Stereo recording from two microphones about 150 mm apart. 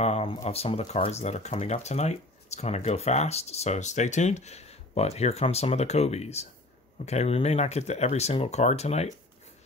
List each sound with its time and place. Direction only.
0.0 s speech: 45° left (ahead or behind)